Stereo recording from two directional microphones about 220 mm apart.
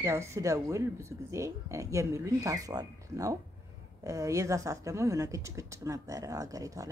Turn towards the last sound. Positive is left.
turn(degrees=-15)  # may be behind; listen again after turning